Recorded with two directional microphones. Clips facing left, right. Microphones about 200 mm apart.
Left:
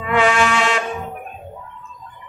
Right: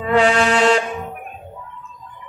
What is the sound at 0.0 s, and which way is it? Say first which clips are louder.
Music: right 2 dB; 35° right (ahead or behind).